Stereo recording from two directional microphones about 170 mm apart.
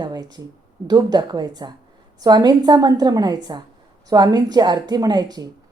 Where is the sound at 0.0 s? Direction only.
25° right (ahead or behind).